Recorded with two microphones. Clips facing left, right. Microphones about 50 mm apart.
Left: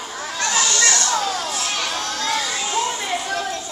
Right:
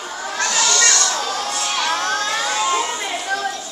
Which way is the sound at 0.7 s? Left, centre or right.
Right.